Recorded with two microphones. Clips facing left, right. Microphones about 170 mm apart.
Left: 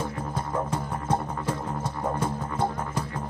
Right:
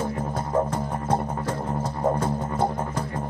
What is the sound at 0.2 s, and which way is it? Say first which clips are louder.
Music: right 5 dB; 25° right (ahead or behind).